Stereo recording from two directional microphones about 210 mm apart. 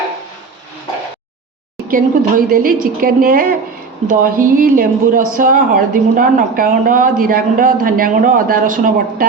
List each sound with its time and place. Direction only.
1.9 s a woman's voice: 40° right (ahead or behind)